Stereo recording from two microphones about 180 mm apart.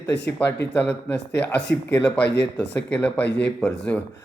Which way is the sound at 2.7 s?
10° left (ahead or behind).